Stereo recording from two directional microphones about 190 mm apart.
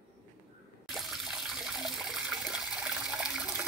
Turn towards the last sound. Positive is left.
turn(degrees=-5)  # may be behind; listen again after turning